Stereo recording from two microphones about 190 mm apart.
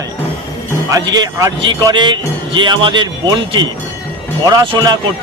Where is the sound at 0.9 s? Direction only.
20° right (ahead or behind).